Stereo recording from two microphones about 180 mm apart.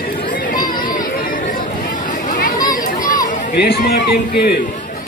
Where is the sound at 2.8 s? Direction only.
45° left (ahead or behind).